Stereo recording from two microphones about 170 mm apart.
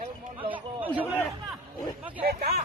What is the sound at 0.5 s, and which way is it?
Chatter, 10° right (ahead or behind).